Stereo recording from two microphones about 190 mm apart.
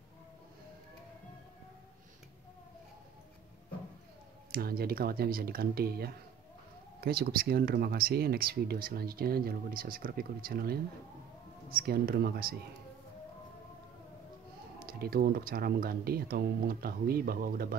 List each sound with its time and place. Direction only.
4.5 s speech: 50° right (ahead or behind)
14.8 s speech: 50° right (ahead or behind)